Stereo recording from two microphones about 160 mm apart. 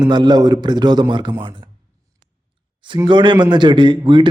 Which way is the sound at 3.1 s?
30° right (ahead or behind).